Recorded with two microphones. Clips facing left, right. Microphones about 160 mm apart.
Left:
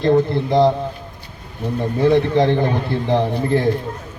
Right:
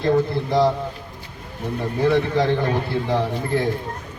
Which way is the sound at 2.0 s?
20° left (ahead or behind).